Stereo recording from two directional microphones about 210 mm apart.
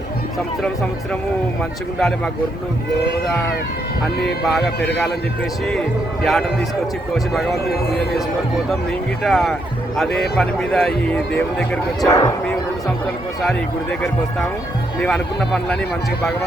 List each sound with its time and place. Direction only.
2.0 s speech: centre (ahead or behind)
4.4 s speech: centre (ahead or behind)
6.2 s speech: centre (ahead or behind)
9.2 s speech: centre (ahead or behind); by 12.5 s 15° left (ahead or behind)
15.0 s speech: 5° left (ahead or behind)